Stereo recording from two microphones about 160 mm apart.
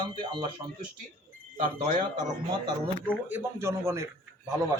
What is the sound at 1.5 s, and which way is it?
Speech, 55° right (ahead or behind).